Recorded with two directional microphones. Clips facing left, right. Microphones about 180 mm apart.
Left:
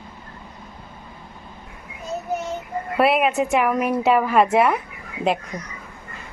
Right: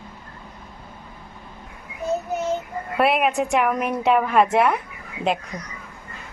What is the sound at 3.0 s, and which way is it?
A woman's voice, centre (ahead or behind).